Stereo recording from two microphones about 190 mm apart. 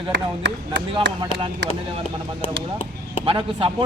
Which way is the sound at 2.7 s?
30° left (ahead or behind).